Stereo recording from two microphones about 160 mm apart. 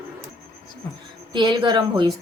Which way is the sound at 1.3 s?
30° right (ahead or behind).